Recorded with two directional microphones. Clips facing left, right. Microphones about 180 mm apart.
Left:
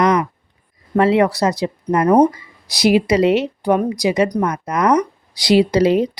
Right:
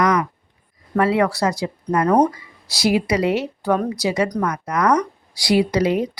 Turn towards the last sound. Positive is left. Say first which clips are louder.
# left 4 dB
turn(degrees=25)  # may be behind; listen again after turning